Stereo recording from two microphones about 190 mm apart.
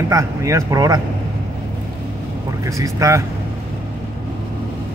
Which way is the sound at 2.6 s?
15° right (ahead or behind).